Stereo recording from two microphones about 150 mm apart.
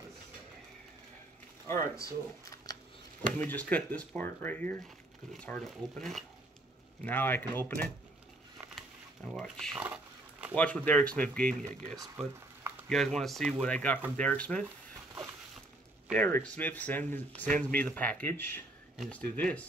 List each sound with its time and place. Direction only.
1.7 s speech: 20° left (ahead or behind)
3.3 s speech: 10° left (ahead or behind)
7.0 s speech: 10° left (ahead or behind)
8.7 s a sound: centre (ahead or behind)
9.8 s a sound: 10° right (ahead or behind)
10.5 s speech: 10° left (ahead or behind)
12.9 s speech: 5° left (ahead or behind)
16.2 s speech: 15° left (ahead or behind)